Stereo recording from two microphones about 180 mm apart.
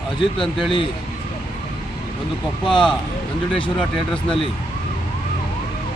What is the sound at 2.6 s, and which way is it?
Speech, 25° left (ahead or behind).